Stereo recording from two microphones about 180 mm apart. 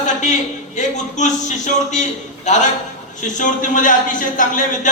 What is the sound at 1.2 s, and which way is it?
Speech, 40° left (ahead or behind).